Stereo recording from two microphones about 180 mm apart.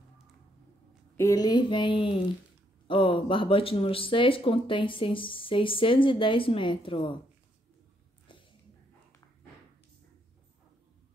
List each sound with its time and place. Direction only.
1.1 s speech: 15° left (ahead or behind)